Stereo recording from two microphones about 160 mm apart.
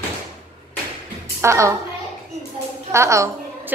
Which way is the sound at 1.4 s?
15° right (ahead or behind).